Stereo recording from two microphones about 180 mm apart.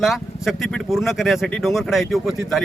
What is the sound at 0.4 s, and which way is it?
Speech, centre (ahead or behind).